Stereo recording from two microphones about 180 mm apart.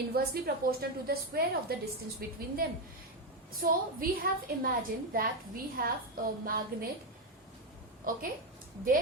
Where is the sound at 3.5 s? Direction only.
55° right (ahead or behind).